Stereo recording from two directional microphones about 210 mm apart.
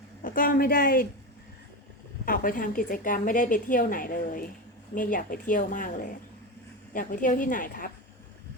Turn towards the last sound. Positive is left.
turn(degrees=40)  # may be behind; listen again after turning